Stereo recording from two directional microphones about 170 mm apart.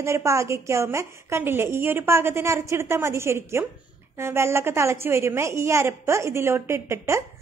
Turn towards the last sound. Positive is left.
turn(degrees=-15)  # may be behind; listen again after turning